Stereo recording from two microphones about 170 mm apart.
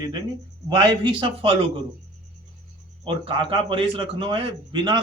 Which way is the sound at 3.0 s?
30° right (ahead or behind).